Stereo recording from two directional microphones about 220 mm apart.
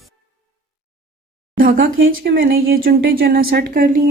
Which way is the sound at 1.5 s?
40° right (ahead or behind).